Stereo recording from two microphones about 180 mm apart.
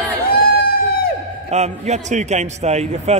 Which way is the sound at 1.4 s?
40° right (ahead or behind).